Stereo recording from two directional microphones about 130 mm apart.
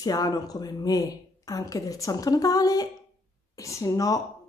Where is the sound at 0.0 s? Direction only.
30° left (ahead or behind).